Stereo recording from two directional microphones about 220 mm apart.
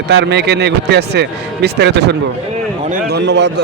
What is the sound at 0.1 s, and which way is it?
A man's voice, 50° right (ahead or behind).